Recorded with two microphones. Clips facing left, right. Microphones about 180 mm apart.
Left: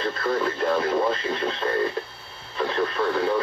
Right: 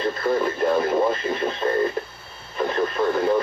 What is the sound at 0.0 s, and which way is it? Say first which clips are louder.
Speech: right 3 dB; 15° right (ahead or behind).